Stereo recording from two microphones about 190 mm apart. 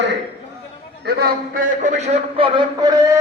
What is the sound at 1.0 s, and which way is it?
A man's voice, 55° right (ahead or behind).